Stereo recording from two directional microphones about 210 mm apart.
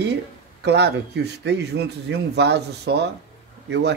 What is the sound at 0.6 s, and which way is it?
Speech, 55° right (ahead or behind).